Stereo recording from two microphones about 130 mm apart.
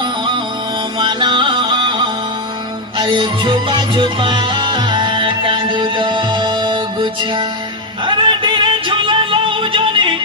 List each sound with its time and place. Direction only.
0.9 s music: 35° right (ahead or behind)